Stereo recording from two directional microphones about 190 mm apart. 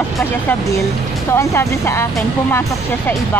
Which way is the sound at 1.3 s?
15° left (ahead or behind).